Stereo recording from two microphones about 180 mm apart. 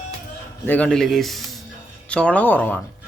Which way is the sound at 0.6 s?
10° left (ahead or behind).